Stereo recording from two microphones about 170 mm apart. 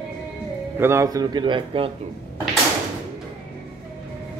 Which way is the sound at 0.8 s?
15° right (ahead or behind).